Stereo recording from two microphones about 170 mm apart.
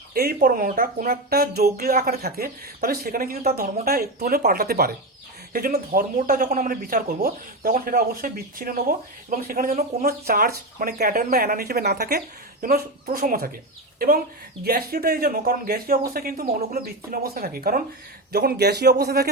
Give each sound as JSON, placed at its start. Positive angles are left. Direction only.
{"t": 0.1, "sound": "speech", "side_deg": -60}
{"t": 10.1, "sound": "speech", "side_deg": -60}
{"t": 14.6, "sound": "speech", "side_deg": -65}
{"t": 18.3, "sound": "a man's voice", "side_deg": -70}